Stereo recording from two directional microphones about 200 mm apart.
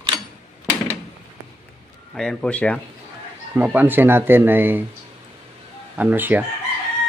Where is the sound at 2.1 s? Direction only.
5° left (ahead or behind).